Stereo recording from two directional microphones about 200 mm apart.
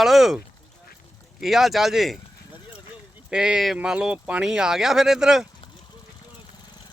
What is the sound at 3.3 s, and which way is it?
Speech, 5° right (ahead or behind).